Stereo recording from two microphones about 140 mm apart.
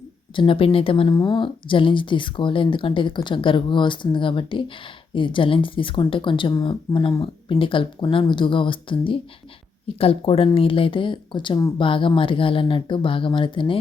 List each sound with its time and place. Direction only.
0.3 s speech: 40° left (ahead or behind)
1.0 s speech: 30° left (ahead or behind)